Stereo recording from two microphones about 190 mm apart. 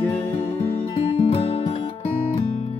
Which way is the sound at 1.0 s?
30° left (ahead or behind).